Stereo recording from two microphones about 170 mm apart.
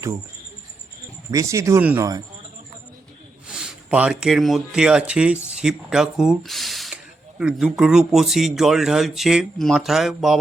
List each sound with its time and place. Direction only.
1.3 s speech: 20° right (ahead or behind)
3.4 s speech: 5° right (ahead or behind)